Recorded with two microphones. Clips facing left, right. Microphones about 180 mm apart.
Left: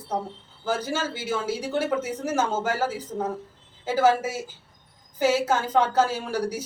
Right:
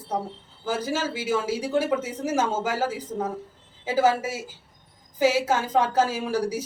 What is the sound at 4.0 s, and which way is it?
A woman's voice, 5° right (ahead or behind).